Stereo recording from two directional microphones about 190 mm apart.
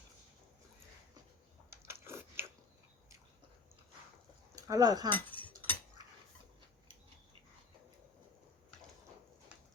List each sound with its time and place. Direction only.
1.7 s biting: 15° right (ahead or behind)
4.5 s speech: 20° right (ahead or behind)
5.0 s chink: 10° left (ahead or behind)